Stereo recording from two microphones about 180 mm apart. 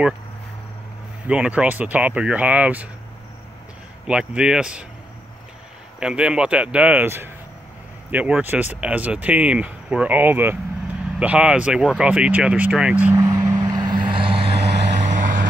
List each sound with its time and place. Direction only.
1.2 s speech: 5° right (ahead or behind)
4.1 s speech: 5° right (ahead or behind)
5.9 s speech: 5° right (ahead or behind)
13.1 s vehicle: 20° right (ahead or behind)
14.6 s vehicle: 65° right (ahead or behind)
14.9 s vehicle: 45° right (ahead or behind)